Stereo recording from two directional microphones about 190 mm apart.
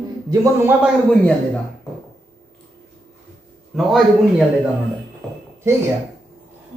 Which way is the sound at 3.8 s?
Centre (ahead or behind).